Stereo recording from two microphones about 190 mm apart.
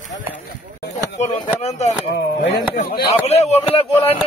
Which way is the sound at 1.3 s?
30° left (ahead or behind).